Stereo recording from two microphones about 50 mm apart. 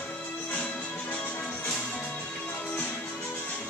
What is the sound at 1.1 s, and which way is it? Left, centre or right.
Music, left.